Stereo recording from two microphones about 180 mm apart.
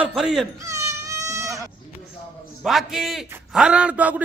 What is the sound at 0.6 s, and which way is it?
Goat, 15° right (ahead or behind).